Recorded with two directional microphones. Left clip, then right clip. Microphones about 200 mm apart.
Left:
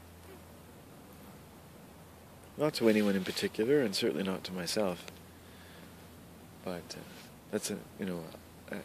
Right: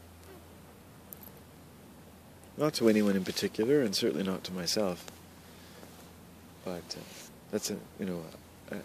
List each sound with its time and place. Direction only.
2.6 s speech: 10° right (ahead or behind)
6.6 s speech: 5° left (ahead or behind)